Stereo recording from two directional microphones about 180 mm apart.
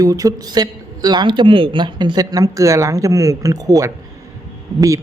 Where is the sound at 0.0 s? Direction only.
20° right (ahead or behind).